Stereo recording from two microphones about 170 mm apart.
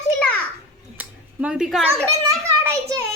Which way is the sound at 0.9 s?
5° right (ahead or behind).